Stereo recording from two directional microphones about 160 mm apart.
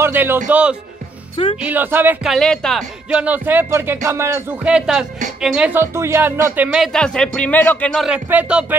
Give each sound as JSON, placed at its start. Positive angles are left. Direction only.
{"t": 0.0, "sound": "a man's voice", "side_deg": -15}
{"t": 1.3, "sound": "speech", "side_deg": 35}
{"t": 1.6, "sound": "speech", "side_deg": -10}
{"t": 2.2, "sound": "speech", "side_deg": 5}